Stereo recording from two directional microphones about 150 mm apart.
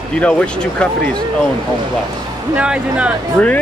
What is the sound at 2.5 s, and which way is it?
Speech, 5° right (ahead or behind).